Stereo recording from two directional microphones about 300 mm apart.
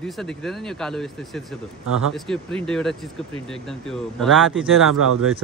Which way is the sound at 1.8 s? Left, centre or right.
Right.